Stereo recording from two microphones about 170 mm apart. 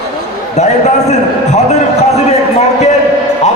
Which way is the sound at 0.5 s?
40° left (ahead or behind).